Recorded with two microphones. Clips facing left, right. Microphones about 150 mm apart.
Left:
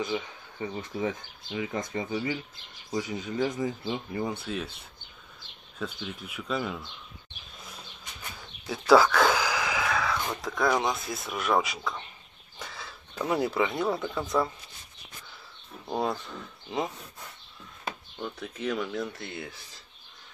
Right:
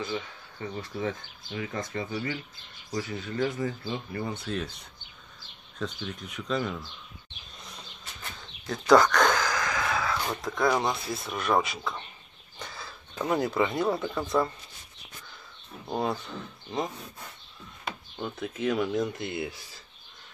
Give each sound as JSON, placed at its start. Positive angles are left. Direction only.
{"t": 0.0, "sound": "speech", "side_deg": 15}
{"t": 5.8, "sound": "speech", "side_deg": 5}
{"t": 7.6, "sound": "a sound", "side_deg": 5}
{"t": 10.3, "sound": "speech", "side_deg": 0}
{"t": 15.9, "sound": "speech", "side_deg": 0}
{"t": 18.2, "sound": "speech", "side_deg": -5}
{"t": 18.9, "sound": "speech", "side_deg": -15}